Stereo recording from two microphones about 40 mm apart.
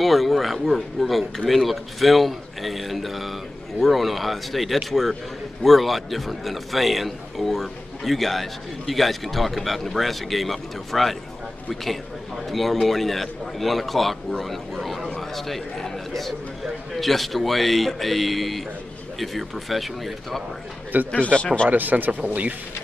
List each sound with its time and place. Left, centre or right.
0.0 s a man's voice: centre
21.1 s speech: left
21.6 s speech: right